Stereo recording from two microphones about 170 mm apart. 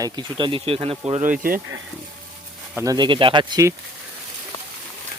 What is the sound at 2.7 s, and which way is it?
Speech, 20° right (ahead or behind).